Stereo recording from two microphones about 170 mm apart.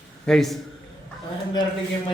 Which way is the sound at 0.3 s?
Centre (ahead or behind).